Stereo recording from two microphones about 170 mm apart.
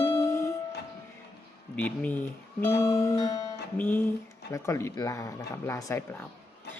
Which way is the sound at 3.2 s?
25° left (ahead or behind).